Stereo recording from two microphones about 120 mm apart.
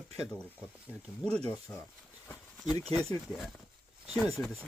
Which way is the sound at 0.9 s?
10° left (ahead or behind).